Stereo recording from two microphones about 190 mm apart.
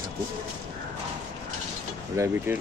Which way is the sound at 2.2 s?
15° right (ahead or behind).